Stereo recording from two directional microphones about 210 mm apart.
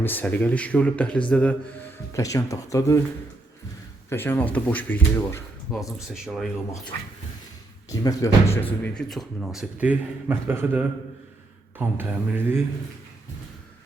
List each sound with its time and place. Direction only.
0.0 s speech: 10° left (ahead or behind)
4.1 s speech: 10° left (ahead or behind)
7.9 s speech: 15° left (ahead or behind); by 12.6 s 10° right (ahead or behind)